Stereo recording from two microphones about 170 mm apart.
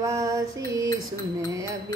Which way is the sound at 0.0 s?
20° right (ahead or behind).